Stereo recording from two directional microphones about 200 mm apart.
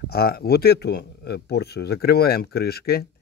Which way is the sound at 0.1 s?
50° left (ahead or behind).